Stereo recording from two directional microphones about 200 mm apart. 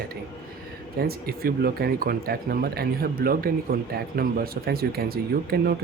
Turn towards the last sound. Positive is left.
turn(degrees=-50)  # may be behind; listen again after turning